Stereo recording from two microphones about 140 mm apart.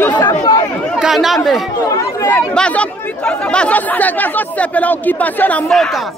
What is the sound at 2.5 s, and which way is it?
Speech, 10° left (ahead or behind).